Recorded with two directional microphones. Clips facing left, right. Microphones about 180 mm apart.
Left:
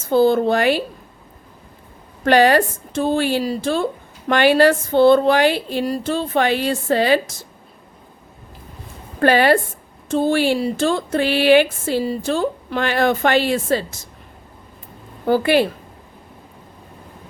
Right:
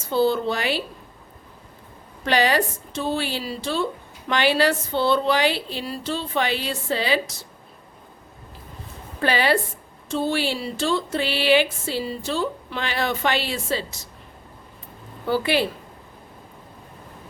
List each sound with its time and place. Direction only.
0.1 s speech: 50° left (ahead or behind)
2.2 s speech: 50° left (ahead or behind)
9.2 s speech: 50° left (ahead or behind)
15.3 s speech: 50° left (ahead or behind)